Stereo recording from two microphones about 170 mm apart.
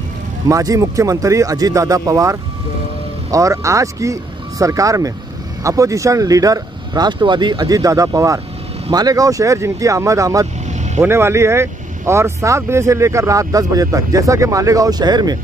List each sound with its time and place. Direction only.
0.5 s speech: 20° right (ahead or behind)